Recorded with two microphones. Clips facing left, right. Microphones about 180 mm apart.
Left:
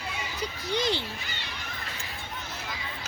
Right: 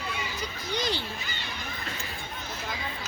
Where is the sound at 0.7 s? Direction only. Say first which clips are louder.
Left 3 dB; 25° left (ahead or behind).